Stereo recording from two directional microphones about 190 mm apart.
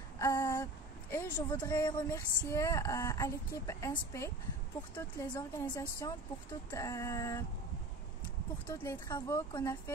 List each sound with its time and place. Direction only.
0.2 s a sound: 15° left (ahead or behind)
1.1 s speech: 15° left (ahead or behind)
5.3 s a woman's voice: 20° left (ahead or behind)
8.6 s speech: 15° left (ahead or behind)